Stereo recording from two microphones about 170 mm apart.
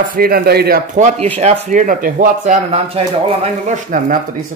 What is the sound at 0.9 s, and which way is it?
Speech, 45° right (ahead or behind).